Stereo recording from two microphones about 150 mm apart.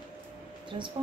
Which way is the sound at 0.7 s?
40° right (ahead or behind).